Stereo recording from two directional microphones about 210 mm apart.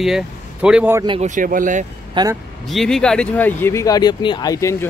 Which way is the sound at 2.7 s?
Centre (ahead or behind).